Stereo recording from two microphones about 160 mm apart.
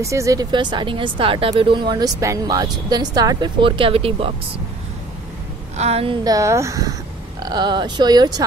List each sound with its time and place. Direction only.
0.0 s speech: 20° right (ahead or behind); by 4.3 s 35° right (ahead or behind)
5.8 s a woman's voice: 40° right (ahead or behind)
6.2 s speech: 20° right (ahead or behind)